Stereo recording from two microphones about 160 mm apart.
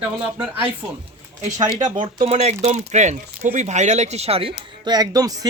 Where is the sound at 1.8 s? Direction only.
25° right (ahead or behind).